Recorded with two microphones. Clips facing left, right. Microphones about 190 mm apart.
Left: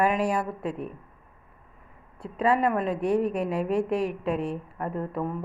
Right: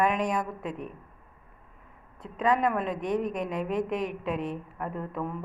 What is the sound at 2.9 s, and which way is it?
Speech, 30° left (ahead or behind).